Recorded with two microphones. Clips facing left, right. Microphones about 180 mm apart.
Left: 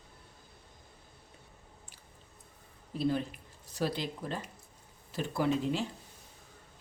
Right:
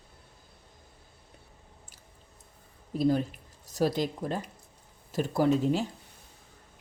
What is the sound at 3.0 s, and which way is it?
Speech, 45° right (ahead or behind).